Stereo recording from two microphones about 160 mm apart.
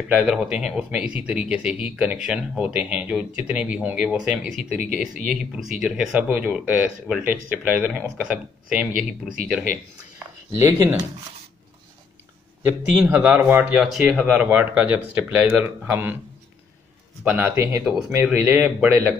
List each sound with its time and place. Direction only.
0.1 s speech: 10° right (ahead or behind)
5.6 s speech: 5° right (ahead or behind)
10.5 s speech: 15° right (ahead or behind)
12.6 s speech: 10° right (ahead or behind)
17.2 s speech: 10° right (ahead or behind)